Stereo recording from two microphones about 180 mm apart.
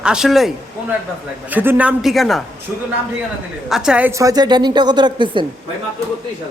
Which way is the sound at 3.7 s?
5° right (ahead or behind).